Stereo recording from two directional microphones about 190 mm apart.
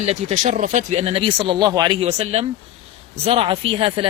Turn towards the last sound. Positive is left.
turn(degrees=-30)  # may be behind; listen again after turning